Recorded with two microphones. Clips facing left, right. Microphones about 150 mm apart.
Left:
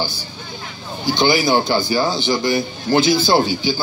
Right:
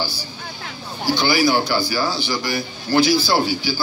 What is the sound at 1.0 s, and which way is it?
A man's voice, 20° left (ahead or behind).